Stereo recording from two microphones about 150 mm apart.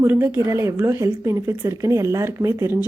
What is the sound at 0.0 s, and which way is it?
Speech, 15° right (ahead or behind).